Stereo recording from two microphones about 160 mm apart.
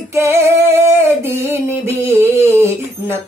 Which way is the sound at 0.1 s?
15° right (ahead or behind).